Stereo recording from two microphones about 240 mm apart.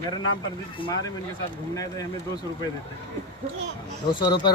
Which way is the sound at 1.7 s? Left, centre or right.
Centre.